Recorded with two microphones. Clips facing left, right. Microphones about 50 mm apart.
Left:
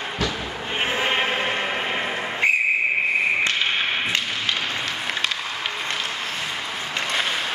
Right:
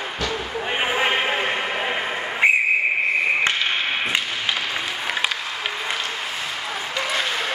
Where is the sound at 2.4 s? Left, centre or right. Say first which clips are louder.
Right 3 dB; centre.